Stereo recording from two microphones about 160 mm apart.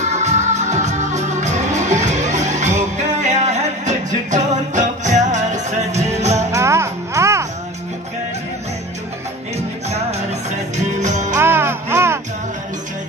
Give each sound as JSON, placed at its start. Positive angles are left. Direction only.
{"t": 0.0, "sound": "music", "side_deg": -45}
{"t": 6.5, "sound": "music", "side_deg": -15}
{"t": 9.8, "sound": "music", "side_deg": -40}
{"t": 11.3, "sound": "music", "side_deg": -15}